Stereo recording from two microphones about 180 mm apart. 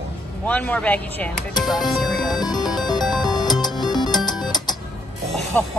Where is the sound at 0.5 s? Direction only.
10° left (ahead or behind).